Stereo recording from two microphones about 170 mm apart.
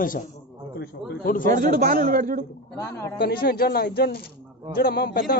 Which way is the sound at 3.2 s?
65° left (ahead or behind).